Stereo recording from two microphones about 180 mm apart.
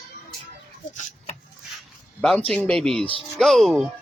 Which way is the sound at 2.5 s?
5° left (ahead or behind).